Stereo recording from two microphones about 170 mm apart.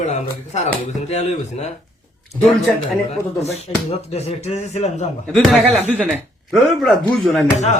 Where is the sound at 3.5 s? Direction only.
40° left (ahead or behind).